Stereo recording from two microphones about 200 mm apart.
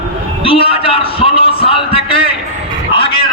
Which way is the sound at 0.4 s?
25° left (ahead or behind).